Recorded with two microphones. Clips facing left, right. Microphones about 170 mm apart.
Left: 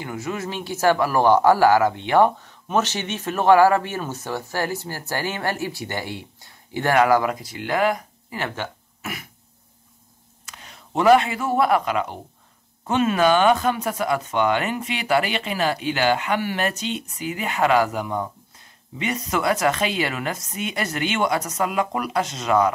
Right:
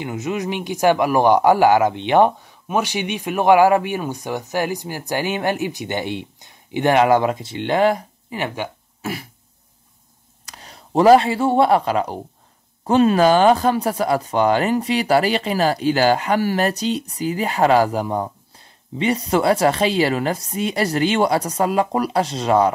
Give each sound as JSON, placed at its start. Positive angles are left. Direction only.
{"t": 0.0, "sound": "speech", "side_deg": -20}
{"t": 9.0, "sound": "throat clearing", "side_deg": -30}
{"t": 10.4, "sound": "a man's voice", "side_deg": -35}